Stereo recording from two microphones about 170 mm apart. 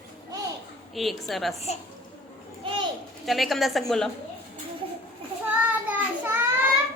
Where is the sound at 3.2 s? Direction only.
Centre (ahead or behind).